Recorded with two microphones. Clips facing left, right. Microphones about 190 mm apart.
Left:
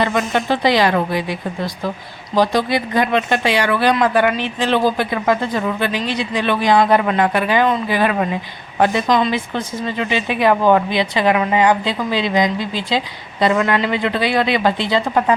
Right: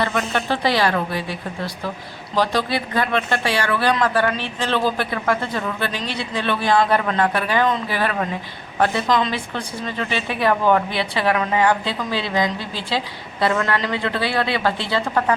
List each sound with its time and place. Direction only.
0.0 s speech: 15° left (ahead or behind)